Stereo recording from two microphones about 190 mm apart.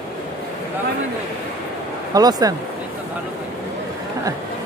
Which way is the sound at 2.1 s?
20° right (ahead or behind).